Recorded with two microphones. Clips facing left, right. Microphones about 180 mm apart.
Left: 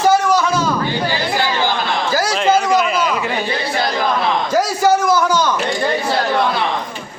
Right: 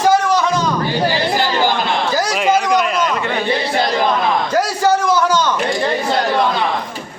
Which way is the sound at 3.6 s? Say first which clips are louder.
Right 2 dB; 25° right (ahead or behind).